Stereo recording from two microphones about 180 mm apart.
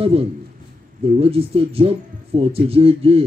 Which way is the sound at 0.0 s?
30° right (ahead or behind).